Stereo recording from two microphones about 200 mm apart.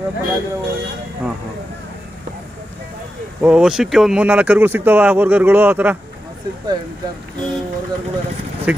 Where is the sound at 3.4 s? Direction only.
5° right (ahead or behind).